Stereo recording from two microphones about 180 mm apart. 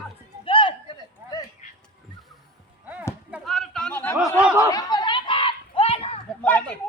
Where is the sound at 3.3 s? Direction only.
Centre (ahead or behind).